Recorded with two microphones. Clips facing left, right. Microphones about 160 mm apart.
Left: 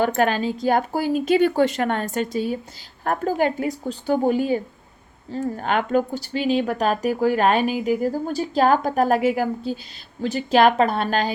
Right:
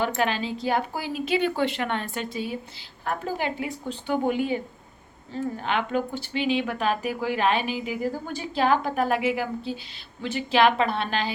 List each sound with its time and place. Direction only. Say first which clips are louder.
0.0 s speech: left 5 dB; 45° left (ahead or behind)